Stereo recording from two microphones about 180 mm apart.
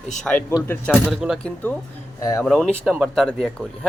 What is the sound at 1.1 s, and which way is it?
Speech, centre (ahead or behind).